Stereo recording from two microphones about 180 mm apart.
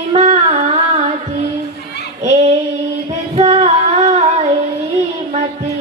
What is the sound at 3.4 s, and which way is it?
Female singing, 35° right (ahead or behind).